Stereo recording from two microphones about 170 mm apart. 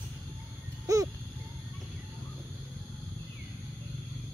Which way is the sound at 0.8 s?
20° right (ahead or behind).